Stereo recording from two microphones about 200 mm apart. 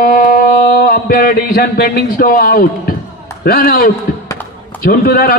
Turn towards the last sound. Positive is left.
turn(degrees=50)  # may be behind; listen again after turning